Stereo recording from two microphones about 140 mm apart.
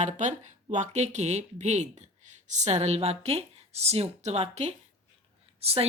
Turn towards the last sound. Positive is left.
turn(degrees=-45)  # may be behind; listen again after turning